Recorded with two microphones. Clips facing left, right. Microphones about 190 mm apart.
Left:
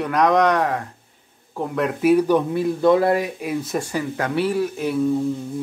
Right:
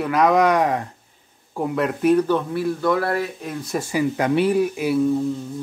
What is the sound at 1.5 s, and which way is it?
Speech, 5° right (ahead or behind).